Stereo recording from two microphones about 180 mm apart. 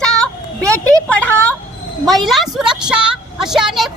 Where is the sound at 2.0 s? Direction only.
Centre (ahead or behind).